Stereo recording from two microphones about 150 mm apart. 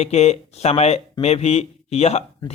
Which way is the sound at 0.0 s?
45° left (ahead or behind).